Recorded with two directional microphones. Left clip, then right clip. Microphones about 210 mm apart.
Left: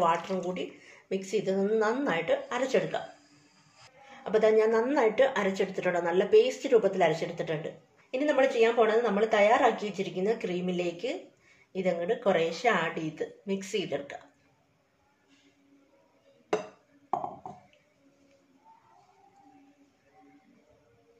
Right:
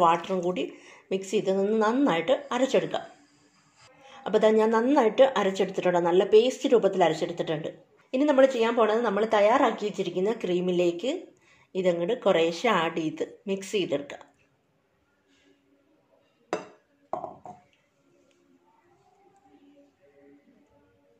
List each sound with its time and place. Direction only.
0.0 s a woman's voice: 35° right (ahead or behind)
4.1 s a woman's voice: 35° right (ahead or behind)